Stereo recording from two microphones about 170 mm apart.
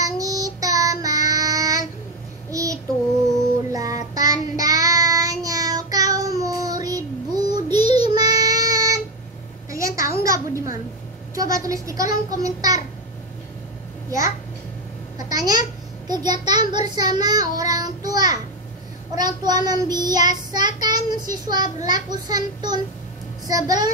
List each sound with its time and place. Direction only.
0.0 s child singing: 20° right (ahead or behind)
9.7 s a sound: 20° right (ahead or behind)
11.3 s a child's voice: 20° right (ahead or behind)
15.1 s babbling: 25° right (ahead or behind)
16.1 s child singing: 25° right (ahead or behind)
21.8 s a child's voice: 25° right (ahead or behind)